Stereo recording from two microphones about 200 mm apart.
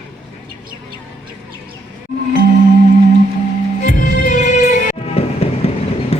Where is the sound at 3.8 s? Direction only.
45° left (ahead or behind).